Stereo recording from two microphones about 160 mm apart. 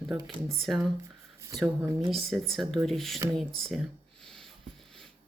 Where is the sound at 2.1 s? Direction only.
Centre (ahead or behind).